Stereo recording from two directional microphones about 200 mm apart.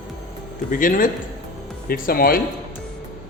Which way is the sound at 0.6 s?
40° left (ahead or behind).